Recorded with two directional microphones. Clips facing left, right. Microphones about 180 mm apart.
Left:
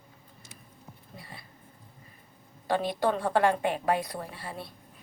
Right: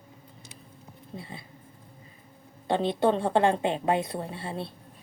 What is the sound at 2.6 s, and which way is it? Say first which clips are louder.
A woman's voice: right 3 dB; 25° right (ahead or behind).